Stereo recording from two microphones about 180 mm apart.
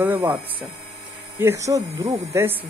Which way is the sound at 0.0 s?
10° right (ahead or behind).